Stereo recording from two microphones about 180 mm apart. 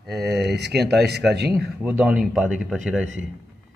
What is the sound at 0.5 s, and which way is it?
Speech, 70° right (ahead or behind).